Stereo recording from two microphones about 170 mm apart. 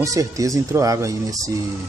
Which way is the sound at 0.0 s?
20° right (ahead or behind).